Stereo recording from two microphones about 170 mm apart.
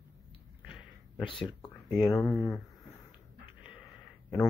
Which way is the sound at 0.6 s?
10° left (ahead or behind).